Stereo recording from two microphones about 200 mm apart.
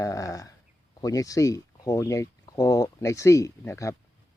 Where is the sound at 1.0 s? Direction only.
15° left (ahead or behind).